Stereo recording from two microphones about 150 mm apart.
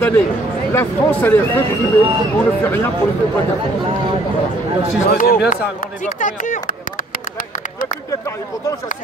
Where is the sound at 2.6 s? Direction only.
15° left (ahead or behind).